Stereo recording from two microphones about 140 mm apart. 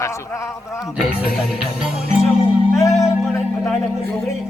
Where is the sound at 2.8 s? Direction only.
20° left (ahead or behind).